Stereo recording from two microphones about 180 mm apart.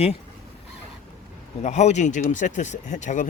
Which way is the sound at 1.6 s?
40° left (ahead or behind).